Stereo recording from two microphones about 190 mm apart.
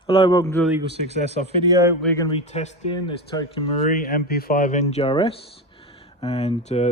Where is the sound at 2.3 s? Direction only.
35° left (ahead or behind).